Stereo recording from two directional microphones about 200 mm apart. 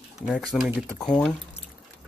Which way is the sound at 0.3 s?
5° left (ahead or behind).